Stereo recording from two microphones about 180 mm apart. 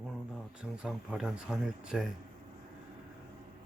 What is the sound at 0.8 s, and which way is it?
Speech, 5° right (ahead or behind).